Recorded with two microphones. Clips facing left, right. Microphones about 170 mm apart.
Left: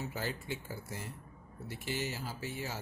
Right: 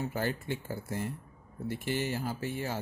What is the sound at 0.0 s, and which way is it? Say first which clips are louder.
Speech: right 6 dB; 55° right (ahead or behind).